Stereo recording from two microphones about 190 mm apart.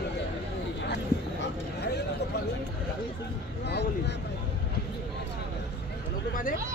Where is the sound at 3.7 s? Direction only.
60° left (ahead or behind).